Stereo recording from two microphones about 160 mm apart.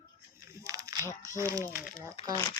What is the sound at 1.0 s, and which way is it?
Speech, 20° left (ahead or behind).